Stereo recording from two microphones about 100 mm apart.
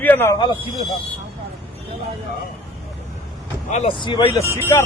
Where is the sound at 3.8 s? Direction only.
55° left (ahead or behind).